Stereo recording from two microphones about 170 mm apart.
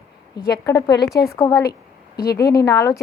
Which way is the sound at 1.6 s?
65° left (ahead or behind).